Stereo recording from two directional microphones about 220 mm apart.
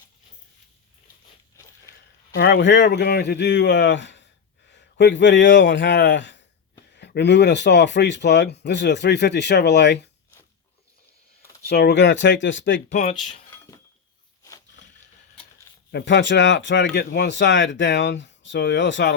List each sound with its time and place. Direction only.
2.3 s speech: 45° left (ahead or behind)
11.7 s speech: 50° left (ahead or behind)
12.9 s speech: 30° left (ahead or behind)
15.9 s speech: 50° left (ahead or behind)